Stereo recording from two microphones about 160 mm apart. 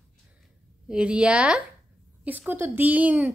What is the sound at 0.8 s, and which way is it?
A woman's voice, 5° right (ahead or behind).